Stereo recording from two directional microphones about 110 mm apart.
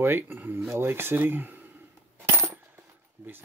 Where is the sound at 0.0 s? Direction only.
20° right (ahead or behind).